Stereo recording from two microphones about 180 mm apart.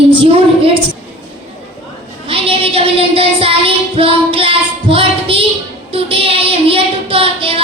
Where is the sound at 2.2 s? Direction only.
30° right (ahead or behind).